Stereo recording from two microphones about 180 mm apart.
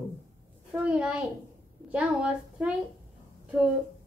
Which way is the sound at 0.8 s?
5° right (ahead or behind).